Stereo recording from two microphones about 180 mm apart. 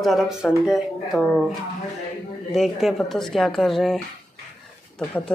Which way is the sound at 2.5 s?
Centre (ahead or behind).